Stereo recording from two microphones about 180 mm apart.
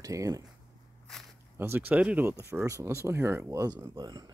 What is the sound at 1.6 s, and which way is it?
Speech, 10° right (ahead or behind).